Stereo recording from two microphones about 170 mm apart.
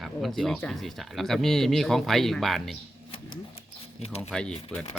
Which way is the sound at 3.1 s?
35° left (ahead or behind).